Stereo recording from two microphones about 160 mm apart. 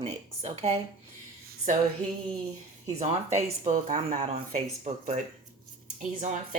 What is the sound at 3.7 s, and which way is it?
Speech, 50° right (ahead or behind).